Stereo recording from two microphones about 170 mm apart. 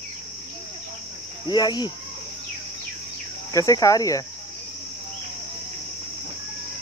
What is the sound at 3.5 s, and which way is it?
Cricket, 20° left (ahead or behind).